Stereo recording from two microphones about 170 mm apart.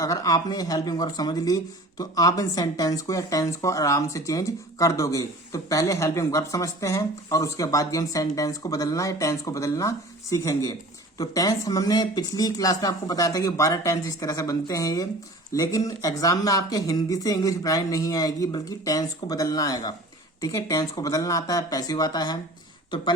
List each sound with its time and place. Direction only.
0.0 s speech: 20° left (ahead or behind)